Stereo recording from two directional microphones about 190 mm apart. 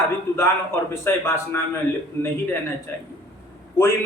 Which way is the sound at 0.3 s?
15° left (ahead or behind).